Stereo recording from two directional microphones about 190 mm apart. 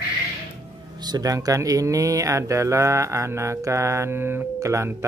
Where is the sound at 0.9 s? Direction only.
20° right (ahead or behind).